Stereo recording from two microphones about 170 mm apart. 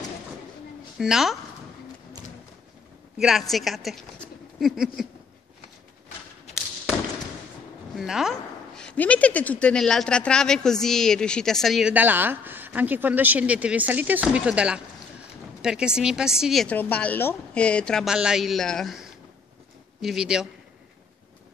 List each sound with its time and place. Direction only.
0.9 s a woman's voice: centre (ahead or behind)
3.2 s a woman's voice: centre (ahead or behind)
7.9 s a woman's voice: centre (ahead or behind)
16.7 s a woman's voice: 10° left (ahead or behind)